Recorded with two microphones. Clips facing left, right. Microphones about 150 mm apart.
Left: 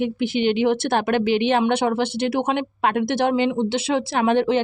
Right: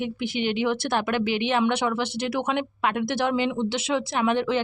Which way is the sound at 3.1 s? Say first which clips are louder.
Left 4 dB; 25° left (ahead or behind).